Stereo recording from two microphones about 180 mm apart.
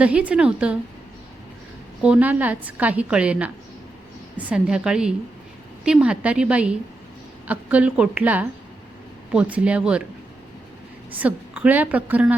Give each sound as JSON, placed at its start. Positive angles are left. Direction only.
{"t": 0.0, "sound": "a woman's voice", "side_deg": -5}
{"t": 2.0, "sound": "a woman's voice", "side_deg": -5}
{"t": 11.1, "sound": "a woman's voice", "side_deg": -10}